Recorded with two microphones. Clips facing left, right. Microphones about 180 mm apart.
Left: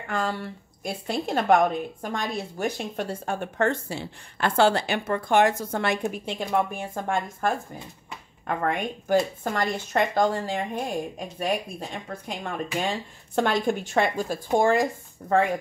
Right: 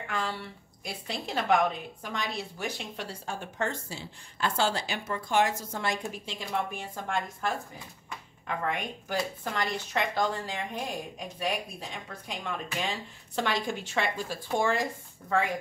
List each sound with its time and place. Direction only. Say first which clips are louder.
0.1 s a woman's voice: left 6 dB; 50° left (ahead or behind)